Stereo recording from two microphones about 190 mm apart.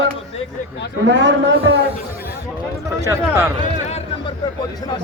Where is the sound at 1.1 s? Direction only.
70° right (ahead or behind).